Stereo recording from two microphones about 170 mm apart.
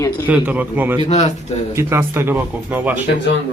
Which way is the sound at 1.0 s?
40° left (ahead or behind).